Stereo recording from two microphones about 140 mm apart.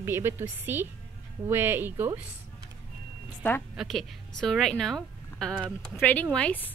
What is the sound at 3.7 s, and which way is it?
A woman's voice, centre (ahead or behind).